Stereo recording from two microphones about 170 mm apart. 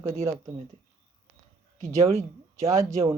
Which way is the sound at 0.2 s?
15° right (ahead or behind).